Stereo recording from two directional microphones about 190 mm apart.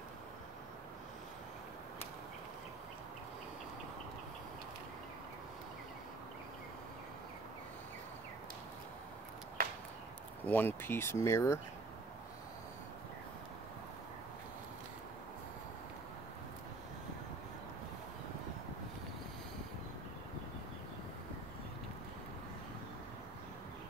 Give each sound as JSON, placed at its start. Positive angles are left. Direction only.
{"t": 10.4, "sound": "speech", "side_deg": 10}